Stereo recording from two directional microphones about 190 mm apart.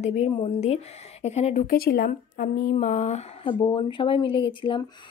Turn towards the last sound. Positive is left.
turn(degrees=25)  # may be behind; listen again after turning